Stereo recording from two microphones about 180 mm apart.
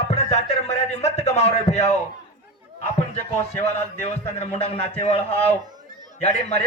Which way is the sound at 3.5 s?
40° left (ahead or behind).